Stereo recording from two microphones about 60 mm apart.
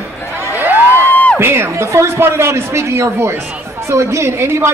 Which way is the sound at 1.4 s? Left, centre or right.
Right.